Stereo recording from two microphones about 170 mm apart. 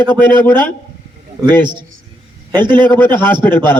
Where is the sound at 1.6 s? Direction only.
25° right (ahead or behind).